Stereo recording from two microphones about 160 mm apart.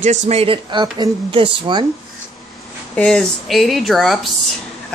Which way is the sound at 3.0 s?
5° left (ahead or behind).